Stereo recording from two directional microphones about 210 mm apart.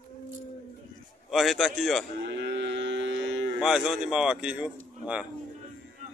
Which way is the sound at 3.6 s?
Centre (ahead or behind).